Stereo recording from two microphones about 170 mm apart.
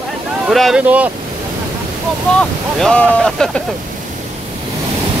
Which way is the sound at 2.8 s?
5° left (ahead or behind).